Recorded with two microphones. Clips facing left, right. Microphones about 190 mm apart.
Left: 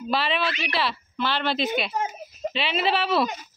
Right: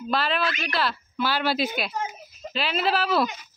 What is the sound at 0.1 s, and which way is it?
Speech, centre (ahead or behind).